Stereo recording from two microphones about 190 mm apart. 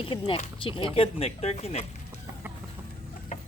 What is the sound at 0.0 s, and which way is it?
Speech, 25° left (ahead or behind).